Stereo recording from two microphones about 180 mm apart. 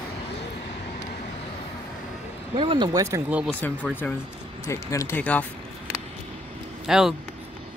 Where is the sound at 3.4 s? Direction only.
10° left (ahead or behind).